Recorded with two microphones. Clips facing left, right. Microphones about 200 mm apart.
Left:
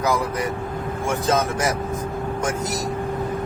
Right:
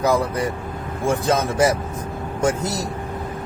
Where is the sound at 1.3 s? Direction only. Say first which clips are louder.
Right 3 dB; 30° right (ahead or behind).